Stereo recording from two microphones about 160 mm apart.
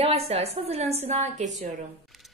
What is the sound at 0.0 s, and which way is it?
A woman's voice, 40° right (ahead or behind).